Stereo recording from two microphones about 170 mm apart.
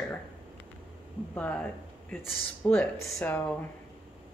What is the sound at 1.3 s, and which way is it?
A woman's voice, 10° left (ahead or behind).